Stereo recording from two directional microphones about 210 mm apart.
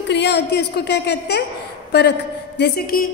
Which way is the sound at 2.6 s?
50° left (ahead or behind).